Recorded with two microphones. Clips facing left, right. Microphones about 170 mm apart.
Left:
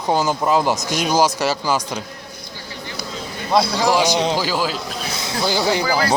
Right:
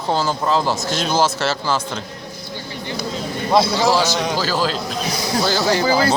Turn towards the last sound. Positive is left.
turn(degrees=-25)  # may be behind; listen again after turning